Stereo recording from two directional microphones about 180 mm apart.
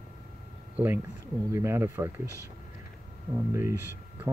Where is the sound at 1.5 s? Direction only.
15° right (ahead or behind).